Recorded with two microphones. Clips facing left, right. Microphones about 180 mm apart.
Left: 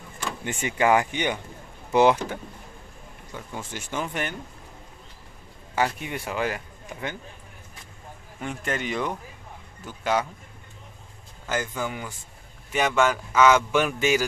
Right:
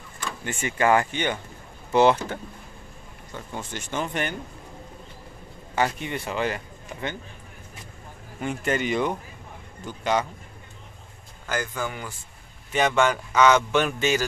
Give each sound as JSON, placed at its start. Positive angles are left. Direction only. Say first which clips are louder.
{"t": 0.4, "sound": "speech", "louder": "even", "side_deg": 20}
{"t": 5.8, "sound": "speech", "louder": "right 1 dB", "side_deg": 5}
{"t": 8.4, "sound": "speech", "louder": "right 4 dB", "side_deg": 0}
{"t": 11.4, "sound": "speech", "louder": "even", "side_deg": 20}